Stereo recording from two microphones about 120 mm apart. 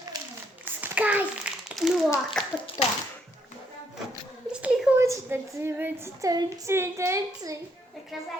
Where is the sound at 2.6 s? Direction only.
50° left (ahead or behind).